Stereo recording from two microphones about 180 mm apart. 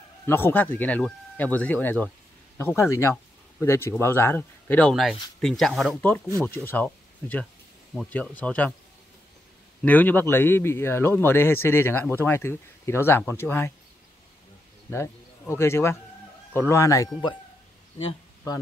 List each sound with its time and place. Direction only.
0.3 s speech: 10° left (ahead or behind)
9.8 s speech: 10° left (ahead or behind)
14.9 s speech: 15° left (ahead or behind)